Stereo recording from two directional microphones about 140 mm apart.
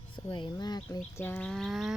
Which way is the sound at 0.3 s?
35° left (ahead or behind).